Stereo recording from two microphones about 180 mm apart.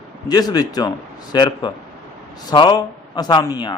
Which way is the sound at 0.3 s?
20° left (ahead or behind).